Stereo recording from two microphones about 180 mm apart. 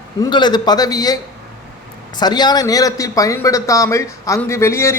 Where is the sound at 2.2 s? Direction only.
25° left (ahead or behind).